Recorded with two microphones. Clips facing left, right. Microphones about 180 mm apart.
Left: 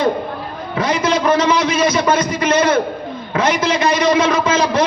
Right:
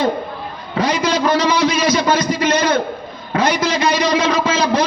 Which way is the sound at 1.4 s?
35° right (ahead or behind).